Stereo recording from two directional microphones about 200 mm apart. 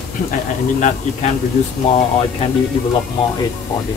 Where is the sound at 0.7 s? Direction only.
40° left (ahead or behind).